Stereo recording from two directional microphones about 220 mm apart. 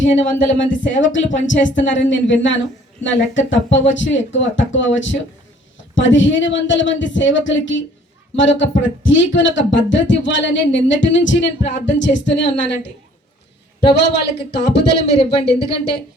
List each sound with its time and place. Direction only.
0.0 s speech: 60° left (ahead or behind)